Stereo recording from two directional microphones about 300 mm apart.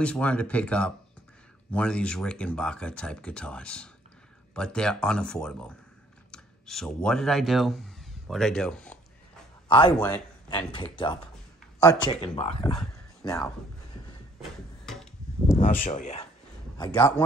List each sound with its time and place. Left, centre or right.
0.0 s speech: centre
9.7 s speech: centre
14.9 s a sound: centre
15.5 s speech: left
16.7 s a man's voice: centre